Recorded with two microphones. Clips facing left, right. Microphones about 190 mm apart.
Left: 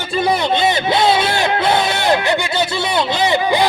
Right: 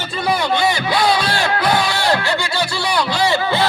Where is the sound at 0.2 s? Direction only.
20° left (ahead or behind).